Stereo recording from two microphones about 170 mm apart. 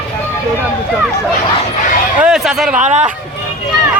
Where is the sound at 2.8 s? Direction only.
40° right (ahead or behind).